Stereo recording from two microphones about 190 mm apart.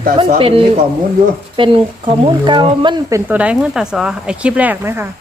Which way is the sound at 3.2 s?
5° right (ahead or behind).